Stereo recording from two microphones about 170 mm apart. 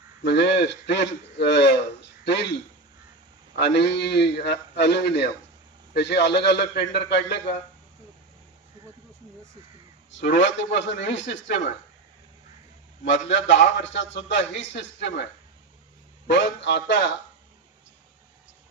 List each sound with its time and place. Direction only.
0.2 s a man's voice: 90° left
3.5 s a man's voice: 80° left
10.1 s a man's voice: 90° left
13.1 s a man's voice: 90° left